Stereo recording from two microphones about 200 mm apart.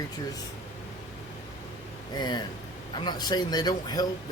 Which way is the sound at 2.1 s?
20° left (ahead or behind).